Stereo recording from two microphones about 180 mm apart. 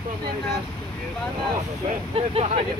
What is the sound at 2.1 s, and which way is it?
Speech, 35° right (ahead or behind).